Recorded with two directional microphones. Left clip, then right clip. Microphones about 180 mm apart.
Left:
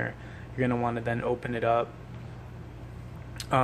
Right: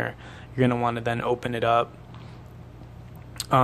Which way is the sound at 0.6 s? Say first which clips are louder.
Right 5 dB; 35° right (ahead or behind).